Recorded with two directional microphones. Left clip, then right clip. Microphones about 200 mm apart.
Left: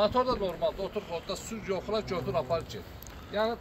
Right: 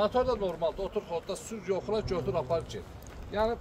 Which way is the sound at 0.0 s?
70° right (ahead or behind).